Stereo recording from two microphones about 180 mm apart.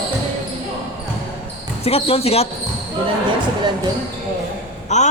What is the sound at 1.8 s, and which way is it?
Speech, 35° left (ahead or behind).